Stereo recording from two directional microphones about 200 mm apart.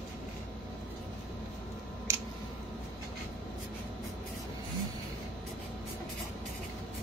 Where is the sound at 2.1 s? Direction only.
15° right (ahead or behind).